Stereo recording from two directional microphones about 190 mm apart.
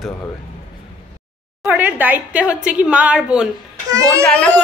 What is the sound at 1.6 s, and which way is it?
A woman's voice, 10° right (ahead or behind).